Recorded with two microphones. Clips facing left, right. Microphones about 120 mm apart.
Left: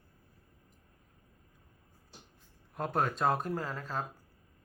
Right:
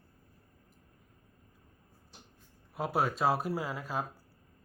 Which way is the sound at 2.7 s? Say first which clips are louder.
Right 1 dB; 5° right (ahead or behind).